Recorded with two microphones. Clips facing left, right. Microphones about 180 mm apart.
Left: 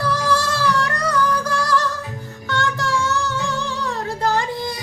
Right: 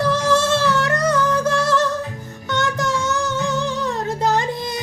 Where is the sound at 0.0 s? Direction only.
25° right (ahead or behind).